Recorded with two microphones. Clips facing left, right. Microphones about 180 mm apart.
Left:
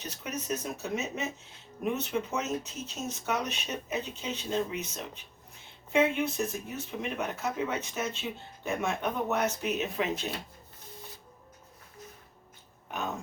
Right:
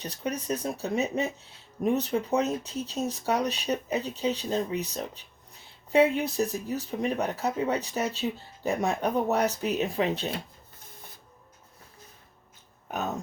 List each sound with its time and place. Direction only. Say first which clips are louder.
0.0 s speech: right 5 dB; 35° right (ahead or behind)